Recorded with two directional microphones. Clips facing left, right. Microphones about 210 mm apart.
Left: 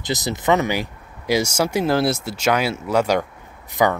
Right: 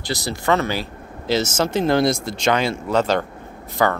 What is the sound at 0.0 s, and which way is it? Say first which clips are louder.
Speech: left 2 dB; 20° left (ahead or behind).